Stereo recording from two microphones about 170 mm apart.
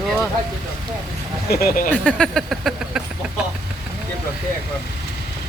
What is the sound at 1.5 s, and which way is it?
Speech, 60° left (ahead or behind).